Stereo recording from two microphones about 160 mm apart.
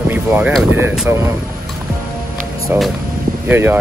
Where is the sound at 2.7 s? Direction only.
10° right (ahead or behind).